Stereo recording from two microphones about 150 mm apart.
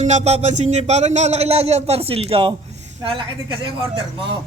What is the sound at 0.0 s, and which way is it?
A man's voice, 50° right (ahead or behind).